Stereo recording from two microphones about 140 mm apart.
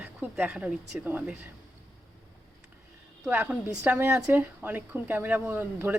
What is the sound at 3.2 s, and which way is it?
A woman's voice, 10° right (ahead or behind).